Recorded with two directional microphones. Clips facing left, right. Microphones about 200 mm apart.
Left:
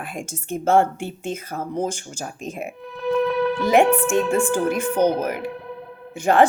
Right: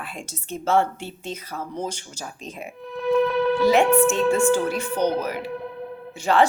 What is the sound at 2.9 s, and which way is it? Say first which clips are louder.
Music: even; centre (ahead or behind).